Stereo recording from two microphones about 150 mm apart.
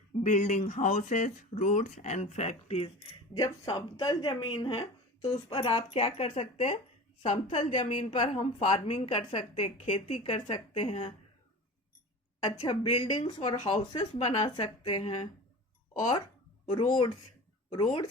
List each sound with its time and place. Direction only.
0.2 s speech: 55° left (ahead or behind)
3.3 s speech: 25° left (ahead or behind); by 11.1 s 40° left (ahead or behind)
12.5 s speech: 35° left (ahead or behind)
14.2 s speech: 45° left (ahead or behind)
14.4 s speech: 30° left (ahead or behind)
16.6 s speech: 30° left (ahead or behind)